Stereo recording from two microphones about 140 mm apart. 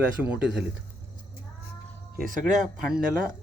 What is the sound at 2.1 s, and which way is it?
Speech, 80° right.